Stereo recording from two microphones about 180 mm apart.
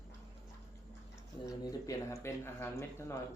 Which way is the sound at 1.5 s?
15° left (ahead or behind).